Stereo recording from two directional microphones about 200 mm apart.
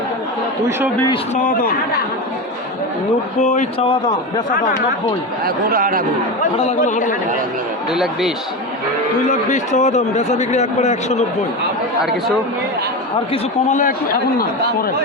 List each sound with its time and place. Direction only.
1.4 s speech: 45° left (ahead or behind)
3.4 s a man's voice: 40° left (ahead or behind)
5.5 s speech: 45° right (ahead or behind)
6.4 s a man's voice: 40° left (ahead or behind)
7.9 s speech: centre (ahead or behind)
9.2 s a man's voice: 40° left (ahead or behind)
13.3 s a man's voice: 40° left (ahead or behind)